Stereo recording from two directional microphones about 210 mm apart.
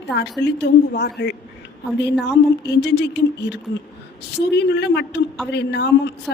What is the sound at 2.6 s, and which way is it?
A woman's voice, 55° left (ahead or behind).